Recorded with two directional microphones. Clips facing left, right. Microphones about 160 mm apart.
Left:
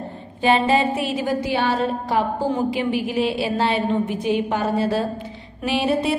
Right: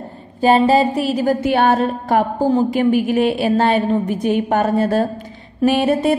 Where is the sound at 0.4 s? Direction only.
40° right (ahead or behind).